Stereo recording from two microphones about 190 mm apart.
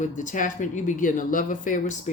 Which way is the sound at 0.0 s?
40° left (ahead or behind).